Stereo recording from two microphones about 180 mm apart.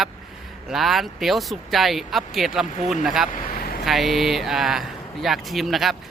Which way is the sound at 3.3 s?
45° left (ahead or behind).